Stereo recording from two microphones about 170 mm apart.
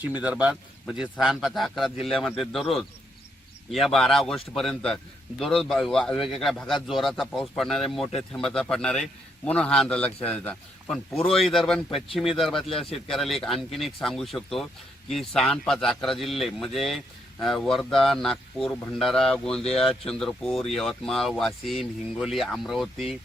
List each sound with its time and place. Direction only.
0.0 s a man's voice: 10° right (ahead or behind)